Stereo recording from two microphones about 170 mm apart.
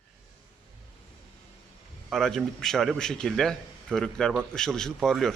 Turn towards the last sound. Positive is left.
turn(degrees=0)  # may be behind; listen again after turning